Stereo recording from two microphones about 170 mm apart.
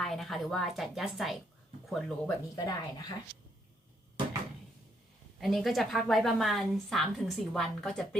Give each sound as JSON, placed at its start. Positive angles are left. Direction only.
{"t": 0.0, "sound": "a woman's voice", "side_deg": 0}
{"t": 2.6, "sound": "a woman's voice", "side_deg": 20}
{"t": 5.4, "sound": "a woman's voice", "side_deg": 0}